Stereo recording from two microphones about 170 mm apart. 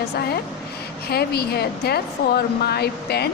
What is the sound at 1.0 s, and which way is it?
A woman's voice, 70° left (ahead or behind).